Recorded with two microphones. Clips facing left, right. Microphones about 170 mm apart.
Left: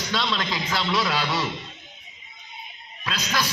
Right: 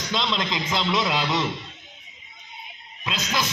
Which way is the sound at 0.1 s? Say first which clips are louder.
Right 1 dB; 20° right (ahead or behind).